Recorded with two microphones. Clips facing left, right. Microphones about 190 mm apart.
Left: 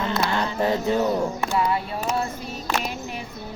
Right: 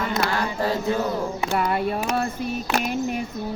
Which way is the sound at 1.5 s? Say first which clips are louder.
Right 4 dB; 60° right (ahead or behind).